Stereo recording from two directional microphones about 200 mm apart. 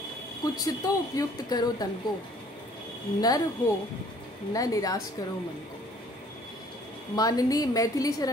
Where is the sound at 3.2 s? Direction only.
20° left (ahead or behind).